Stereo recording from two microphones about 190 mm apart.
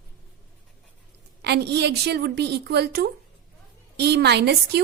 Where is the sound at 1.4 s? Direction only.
60° right (ahead or behind).